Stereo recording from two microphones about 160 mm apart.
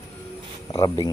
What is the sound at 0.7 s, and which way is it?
Speech, 25° left (ahead or behind).